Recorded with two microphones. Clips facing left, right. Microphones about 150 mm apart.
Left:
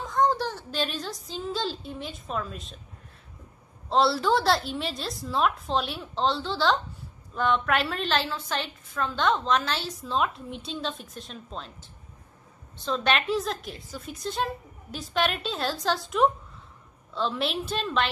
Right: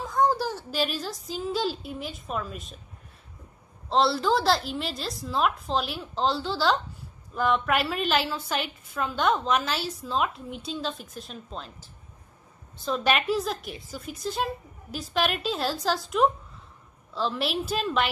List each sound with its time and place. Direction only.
0.0 s a woman's voice: 5° right (ahead or behind)
3.9 s a woman's voice: centre (ahead or behind)
12.8 s a woman's voice: 10° right (ahead or behind)